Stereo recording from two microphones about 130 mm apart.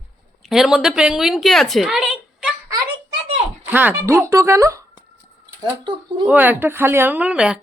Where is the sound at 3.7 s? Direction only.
15° right (ahead or behind).